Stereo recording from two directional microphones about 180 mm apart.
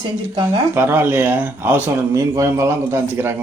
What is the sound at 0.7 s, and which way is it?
Speech, 10° right (ahead or behind).